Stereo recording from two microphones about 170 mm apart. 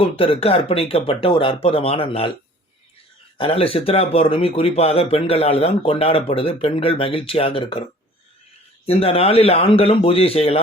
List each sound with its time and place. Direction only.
0.0 s speech: 35° left (ahead or behind)
3.3 s speech: 35° left (ahead or behind)
8.9 s speech: 35° left (ahead or behind)